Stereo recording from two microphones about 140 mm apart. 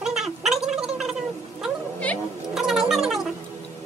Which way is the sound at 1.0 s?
5° right (ahead or behind).